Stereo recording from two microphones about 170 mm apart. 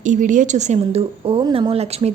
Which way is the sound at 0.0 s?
50° right (ahead or behind).